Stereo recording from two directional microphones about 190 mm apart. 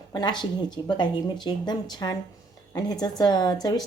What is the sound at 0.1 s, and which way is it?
A woman's voice, 20° left (ahead or behind).